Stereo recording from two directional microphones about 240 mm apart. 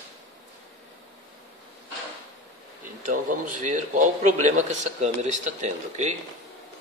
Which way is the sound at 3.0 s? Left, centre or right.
Right.